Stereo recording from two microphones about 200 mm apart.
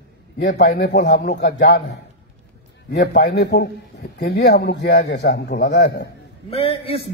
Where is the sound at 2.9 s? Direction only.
55° left (ahead or behind).